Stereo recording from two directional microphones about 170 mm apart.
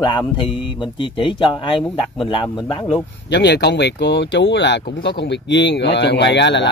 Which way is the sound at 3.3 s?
85° left.